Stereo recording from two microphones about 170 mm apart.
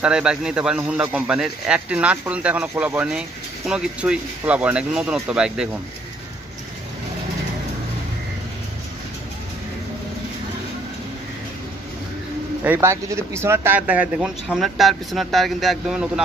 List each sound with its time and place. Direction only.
0.0 s a man's voice: 5° right (ahead or behind)
12.6 s a man's voice: 15° right (ahead or behind)